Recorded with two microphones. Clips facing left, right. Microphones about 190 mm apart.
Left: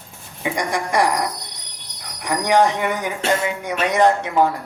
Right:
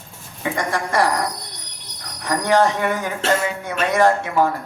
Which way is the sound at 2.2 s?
15° left (ahead or behind).